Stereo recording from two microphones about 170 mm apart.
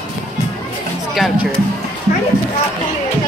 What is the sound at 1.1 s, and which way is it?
Speech, centre (ahead or behind).